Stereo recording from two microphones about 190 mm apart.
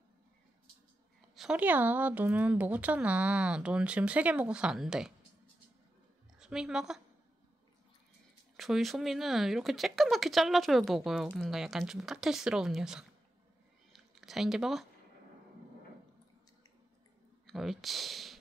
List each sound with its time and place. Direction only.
1.3 s speech: 5° right (ahead or behind)
6.4 s a woman's voice: 5° right (ahead or behind)
8.5 s speech: centre (ahead or behind)
17.5 s speech: centre (ahead or behind)